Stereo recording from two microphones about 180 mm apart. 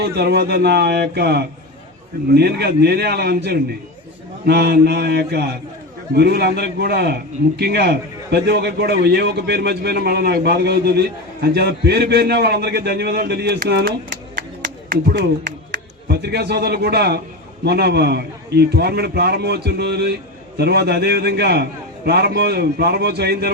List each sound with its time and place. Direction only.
0.0 s a man's voice: 65° right (ahead or behind)
14.3 s music: 55° right (ahead or behind)
16.0 s a man's voice: 65° right (ahead or behind)